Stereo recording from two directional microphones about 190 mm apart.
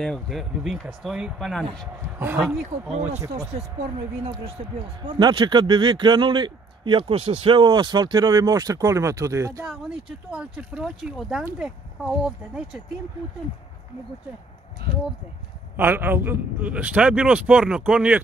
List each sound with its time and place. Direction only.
0.0 s speech: centre (ahead or behind)
2.1 s a man's voice: 10° right (ahead or behind)
4.2 s speech: 30° right (ahead or behind)
9.7 s speech: 5° right (ahead or behind)
15.7 s a man's voice: 10° right (ahead or behind)